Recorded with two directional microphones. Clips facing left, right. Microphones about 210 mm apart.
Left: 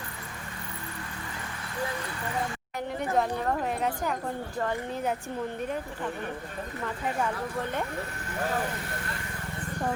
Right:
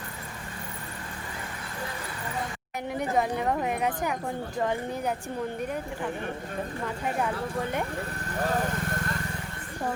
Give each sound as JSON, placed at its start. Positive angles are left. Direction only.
{"t": 3.2, "sound": "speech", "side_deg": -10}
{"t": 8.3, "sound": "vehicle", "side_deg": -45}